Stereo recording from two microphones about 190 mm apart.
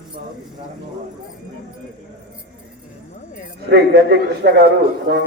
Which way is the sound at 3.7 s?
60° right (ahead or behind).